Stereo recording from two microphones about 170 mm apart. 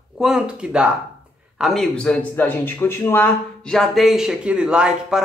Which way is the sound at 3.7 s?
Centre (ahead or behind).